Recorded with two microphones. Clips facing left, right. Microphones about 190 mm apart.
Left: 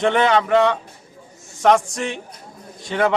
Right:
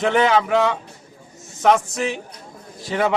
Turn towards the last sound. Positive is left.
turn(degrees=-5)  # may be behind; listen again after turning